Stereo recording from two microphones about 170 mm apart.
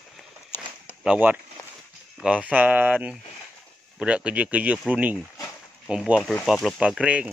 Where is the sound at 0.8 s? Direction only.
10° right (ahead or behind).